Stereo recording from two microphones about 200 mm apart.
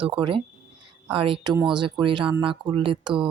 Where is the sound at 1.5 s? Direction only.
5° right (ahead or behind).